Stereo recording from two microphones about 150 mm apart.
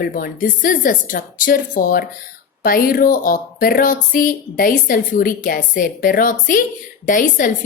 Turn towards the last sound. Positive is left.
turn(degrees=65)  # may be behind; listen again after turning